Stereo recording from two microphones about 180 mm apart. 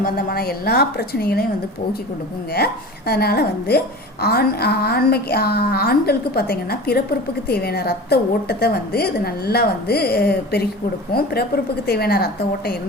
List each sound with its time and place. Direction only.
0.0 s a woman's voice: 55° left (ahead or behind)
3.1 s a woman's voice: 60° left (ahead or behind)